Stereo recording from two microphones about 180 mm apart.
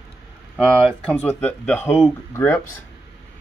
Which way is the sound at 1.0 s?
5° left (ahead or behind).